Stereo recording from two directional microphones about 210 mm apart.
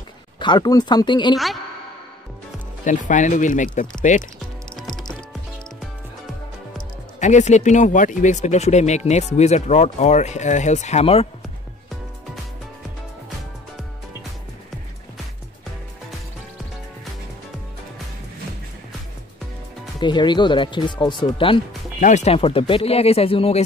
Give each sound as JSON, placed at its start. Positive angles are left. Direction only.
{"t": 0.4, "sound": "speech", "side_deg": 20}
{"t": 1.3, "sound": "a woman's voice", "side_deg": 0}
{"t": 2.8, "sound": "speech", "side_deg": 35}
{"t": 4.7, "sound": "music", "side_deg": 0}
{"t": 7.2, "sound": "speech", "side_deg": 35}
{"t": 20.0, "sound": "speech", "side_deg": 20}